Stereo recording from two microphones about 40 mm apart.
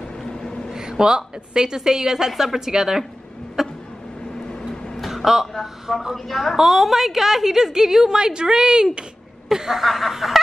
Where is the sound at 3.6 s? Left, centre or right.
Centre.